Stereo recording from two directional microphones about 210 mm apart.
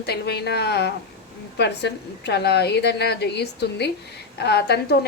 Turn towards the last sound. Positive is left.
turn(degrees=50)  # may be behind; listen again after turning